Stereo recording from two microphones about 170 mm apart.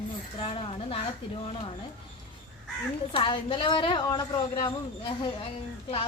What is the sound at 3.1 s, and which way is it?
A woman's voice, 30° left (ahead or behind).